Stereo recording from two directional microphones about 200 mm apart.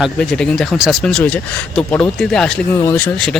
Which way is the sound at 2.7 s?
15° left (ahead or behind).